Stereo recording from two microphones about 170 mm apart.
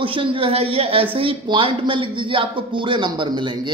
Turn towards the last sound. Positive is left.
turn(degrees=-30)  # may be behind; listen again after turning